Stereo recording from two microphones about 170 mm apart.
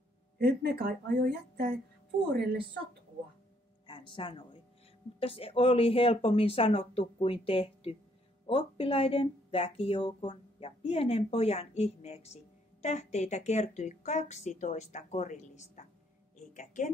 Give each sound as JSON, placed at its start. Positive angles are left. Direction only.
{"t": 0.4, "sound": "a woman's voice", "side_deg": -70}
{"t": 3.8, "sound": "a woman's voice", "side_deg": 30}